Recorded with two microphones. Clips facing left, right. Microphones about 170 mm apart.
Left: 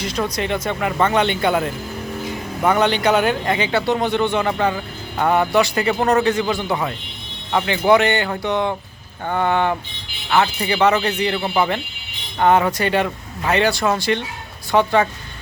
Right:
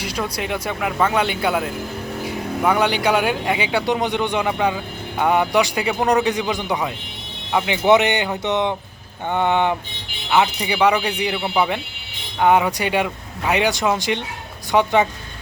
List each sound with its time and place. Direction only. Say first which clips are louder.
0.0 s speech: left 3 dB; 10° right (ahead or behind)
7.9 s music: even; 20° right (ahead or behind)
10.2 s speech: even; 15° right (ahead or behind)